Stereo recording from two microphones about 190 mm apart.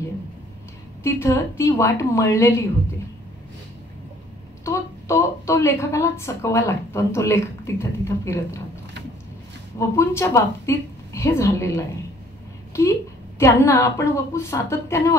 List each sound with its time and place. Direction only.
1.0 s a woman's voice: 15° left (ahead or behind)
4.6 s a woman's voice: 15° left (ahead or behind)
9.8 s a woman's voice: 15° left (ahead or behind)
13.4 s a woman's voice: 15° left (ahead or behind)